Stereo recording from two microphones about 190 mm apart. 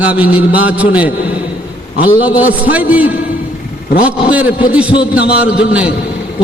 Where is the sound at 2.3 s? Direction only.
10° right (ahead or behind).